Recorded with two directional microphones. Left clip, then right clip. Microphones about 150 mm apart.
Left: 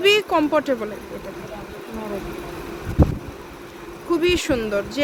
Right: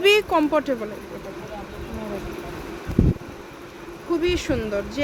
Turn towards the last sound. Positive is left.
turn(degrees=25)  # may be behind; listen again after turning